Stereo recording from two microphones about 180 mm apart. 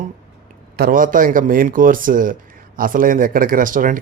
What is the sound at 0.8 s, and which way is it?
Speech, 50° right (ahead or behind).